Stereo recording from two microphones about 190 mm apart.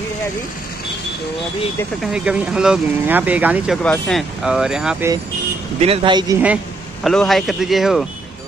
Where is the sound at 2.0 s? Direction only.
5° right (ahead or behind).